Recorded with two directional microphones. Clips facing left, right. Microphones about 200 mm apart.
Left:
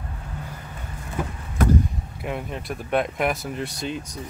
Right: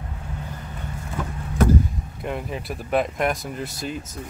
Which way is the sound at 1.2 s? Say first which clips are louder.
Left 2 dB; 10° left (ahead or behind).